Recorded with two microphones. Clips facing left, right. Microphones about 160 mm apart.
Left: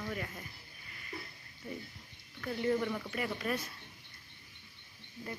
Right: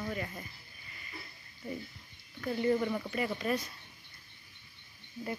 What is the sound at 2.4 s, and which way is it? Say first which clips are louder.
Speech: right 3 dB; 10° right (ahead or behind).